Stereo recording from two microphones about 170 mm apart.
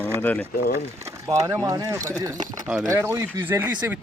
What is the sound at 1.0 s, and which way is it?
Speech, 20° right (ahead or behind).